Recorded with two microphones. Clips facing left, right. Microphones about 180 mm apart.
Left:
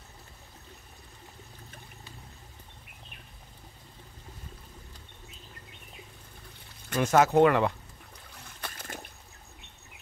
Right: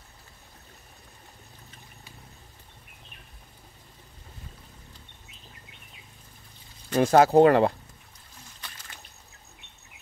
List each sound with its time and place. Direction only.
6.9 s speech: 35° right (ahead or behind)
8.5 s trickle: 55° left (ahead or behind)